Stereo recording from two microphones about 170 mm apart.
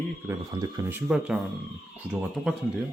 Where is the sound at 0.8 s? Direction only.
10° right (ahead or behind).